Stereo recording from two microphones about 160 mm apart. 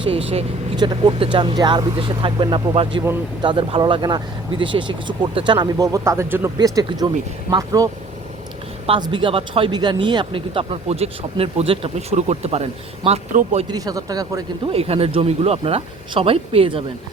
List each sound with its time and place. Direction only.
0.0 s speech: 35° right (ahead or behind)
8.9 s a man's voice: 30° right (ahead or behind)
13.7 s speech: 20° right (ahead or behind)
14.7 s speech: 40° right (ahead or behind)